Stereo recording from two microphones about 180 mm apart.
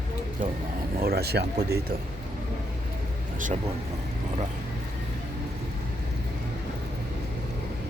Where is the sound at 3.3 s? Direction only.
45° right (ahead or behind).